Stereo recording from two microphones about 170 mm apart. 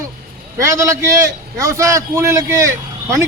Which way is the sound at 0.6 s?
20° right (ahead or behind).